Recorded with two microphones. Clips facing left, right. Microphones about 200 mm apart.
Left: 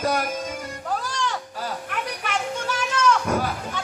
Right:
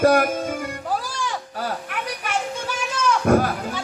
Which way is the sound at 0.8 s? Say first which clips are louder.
Left 2 dB; 5° right (ahead or behind).